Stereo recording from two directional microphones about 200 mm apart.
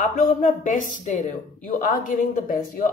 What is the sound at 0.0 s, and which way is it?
A woman's voice, 40° left (ahead or behind).